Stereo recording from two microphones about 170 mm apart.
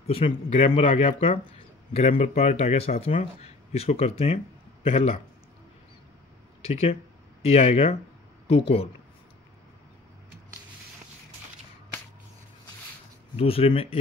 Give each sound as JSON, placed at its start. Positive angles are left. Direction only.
{"t": 0.0, "sound": "speech", "side_deg": 35}
{"t": 6.7, "sound": "speech", "side_deg": 35}
{"t": 13.4, "sound": "speech", "side_deg": 35}